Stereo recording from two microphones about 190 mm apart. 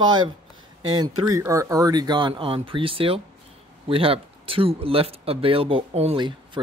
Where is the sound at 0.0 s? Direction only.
25° right (ahead or behind).